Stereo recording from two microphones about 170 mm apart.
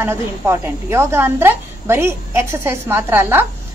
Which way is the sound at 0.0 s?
15° right (ahead or behind).